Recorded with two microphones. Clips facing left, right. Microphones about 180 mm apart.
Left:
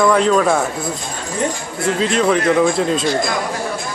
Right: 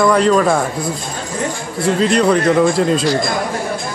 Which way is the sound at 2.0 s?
Centre (ahead or behind).